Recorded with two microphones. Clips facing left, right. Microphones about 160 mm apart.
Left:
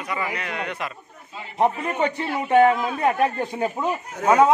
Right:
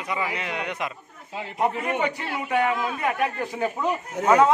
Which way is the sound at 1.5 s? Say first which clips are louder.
Left 3 dB; 30° left (ahead or behind).